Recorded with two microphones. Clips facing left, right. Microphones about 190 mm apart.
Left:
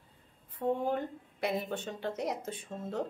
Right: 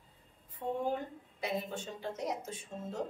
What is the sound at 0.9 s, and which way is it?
Speech, 60° left (ahead or behind).